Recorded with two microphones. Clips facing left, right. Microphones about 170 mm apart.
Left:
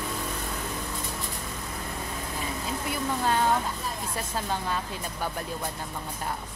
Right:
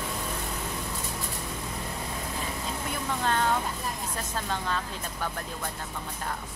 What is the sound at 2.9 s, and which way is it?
Speech, 10° left (ahead or behind).